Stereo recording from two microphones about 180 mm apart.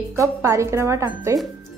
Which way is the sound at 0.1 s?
15° right (ahead or behind).